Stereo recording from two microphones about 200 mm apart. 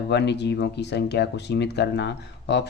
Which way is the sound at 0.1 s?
60° left (ahead or behind).